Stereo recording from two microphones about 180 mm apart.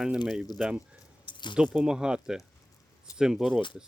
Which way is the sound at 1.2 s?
25° left (ahead or behind).